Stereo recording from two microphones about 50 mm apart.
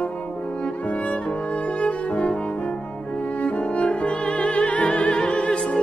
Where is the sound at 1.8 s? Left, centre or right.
Left.